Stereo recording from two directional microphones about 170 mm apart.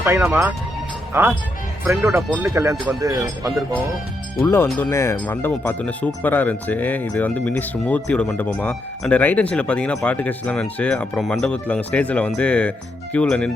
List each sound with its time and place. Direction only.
0.0 s speech: 15° right (ahead or behind)
4.4 s speech: 15° left (ahead or behind)